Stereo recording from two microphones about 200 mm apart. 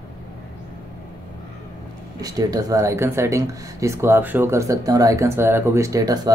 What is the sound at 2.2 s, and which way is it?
Speech, 20° right (ahead or behind).